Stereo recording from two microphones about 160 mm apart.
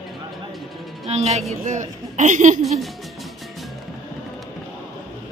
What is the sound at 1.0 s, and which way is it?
A woman's voice, 40° right (ahead or behind).